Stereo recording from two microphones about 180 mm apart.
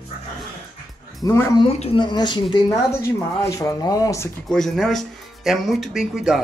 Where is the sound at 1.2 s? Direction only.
15° left (ahead or behind).